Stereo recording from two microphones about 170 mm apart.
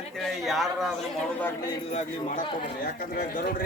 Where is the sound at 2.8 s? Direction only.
60° left (ahead or behind).